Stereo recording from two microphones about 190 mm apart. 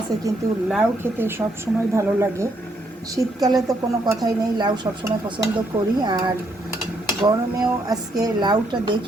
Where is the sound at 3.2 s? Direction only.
20° right (ahead or behind).